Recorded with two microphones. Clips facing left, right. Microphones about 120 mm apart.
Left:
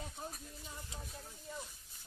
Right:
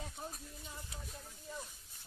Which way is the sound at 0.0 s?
Centre (ahead or behind).